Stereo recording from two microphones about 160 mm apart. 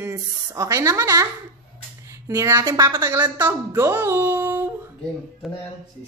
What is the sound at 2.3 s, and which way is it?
A woman's voice, 20° right (ahead or behind).